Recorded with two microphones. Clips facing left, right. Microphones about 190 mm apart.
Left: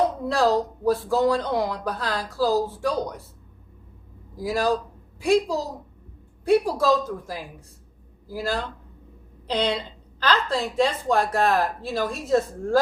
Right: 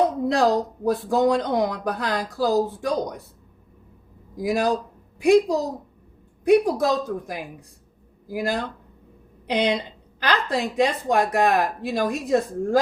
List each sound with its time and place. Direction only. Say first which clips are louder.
0.3 s a woman's voice: right 1 dB; 15° right (ahead or behind)
4.4 s a woman's voice: right 1 dB; 15° right (ahead or behind)